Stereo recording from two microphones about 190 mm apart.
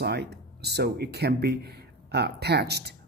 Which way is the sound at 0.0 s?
60° right (ahead or behind).